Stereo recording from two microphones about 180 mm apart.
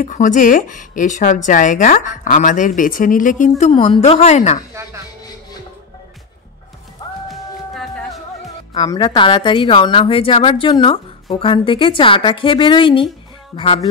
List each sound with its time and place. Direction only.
0.0 s a woman's voice: 45° left (ahead or behind)
7.2 s music: centre (ahead or behind)
8.7 s a woman's voice: 25° left (ahead or behind)